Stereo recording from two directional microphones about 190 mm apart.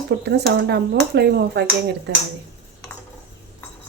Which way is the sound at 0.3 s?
60° right (ahead or behind).